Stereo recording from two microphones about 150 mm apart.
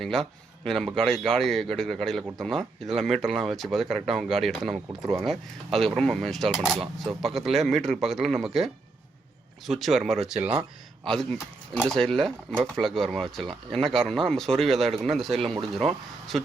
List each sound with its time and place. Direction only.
0.0 s speech: 5° left (ahead or behind)
4.9 s speech: 20° right (ahead or behind)
5.2 s speech: centre (ahead or behind)